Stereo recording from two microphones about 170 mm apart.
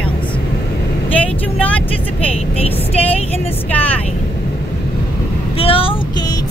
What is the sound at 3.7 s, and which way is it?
Vehicle, 10° left (ahead or behind).